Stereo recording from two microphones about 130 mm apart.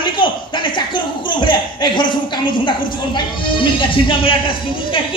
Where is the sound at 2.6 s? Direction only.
35° left (ahead or behind).